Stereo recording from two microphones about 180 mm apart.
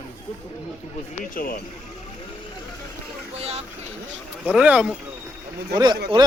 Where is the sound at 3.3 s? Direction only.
35° right (ahead or behind).